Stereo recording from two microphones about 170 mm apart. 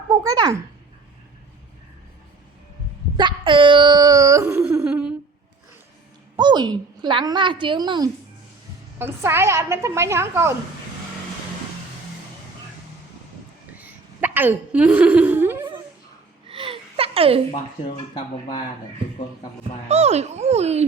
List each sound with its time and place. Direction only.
0.1 s a child's voice: 25° right (ahead or behind)
3.2 s speech: 30° right (ahead or behind); by 5.1 s 5° right (ahead or behind)
6.3 s a woman's voice: 25° right (ahead or behind)
9.0 s a woman's voice: 15° right (ahead or behind)
13.7 s a woman's voice: 10° right (ahead or behind)
16.5 s a sound: 30° right (ahead or behind)
18.1 s speech: 25° left (ahead or behind)
19.9 s a child's voice: 40° right (ahead or behind)